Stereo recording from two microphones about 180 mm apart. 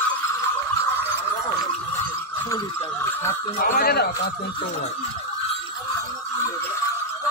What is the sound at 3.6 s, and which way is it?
Speech, 55° left (ahead or behind).